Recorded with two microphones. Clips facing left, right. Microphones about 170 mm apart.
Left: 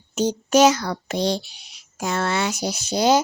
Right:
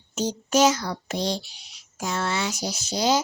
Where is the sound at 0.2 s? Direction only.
65° left (ahead or behind).